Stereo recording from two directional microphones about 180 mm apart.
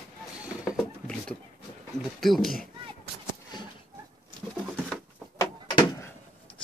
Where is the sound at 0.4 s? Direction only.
5° right (ahead or behind).